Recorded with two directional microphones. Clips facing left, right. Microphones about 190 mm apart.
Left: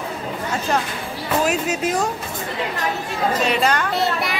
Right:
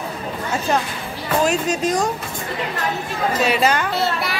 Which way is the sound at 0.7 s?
5° right (ahead or behind).